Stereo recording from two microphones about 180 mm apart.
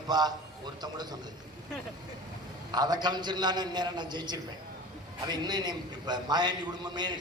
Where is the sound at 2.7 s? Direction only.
25° right (ahead or behind).